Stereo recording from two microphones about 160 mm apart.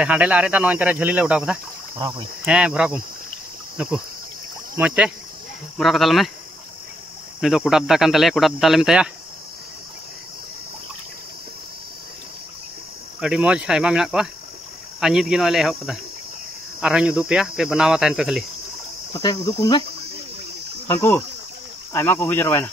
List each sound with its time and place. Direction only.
0.0 s speech: 10° right (ahead or behind)
2.0 s speech: 20° right (ahead or behind)
2.4 s speech: 5° right (ahead or behind)
7.3 s speech: centre (ahead or behind)
13.2 s speech: 5° right (ahead or behind)
19.1 s cricket: 20° left (ahead or behind)
20.8 s cricket: 15° left (ahead or behind)
21.9 s speech: 15° left (ahead or behind)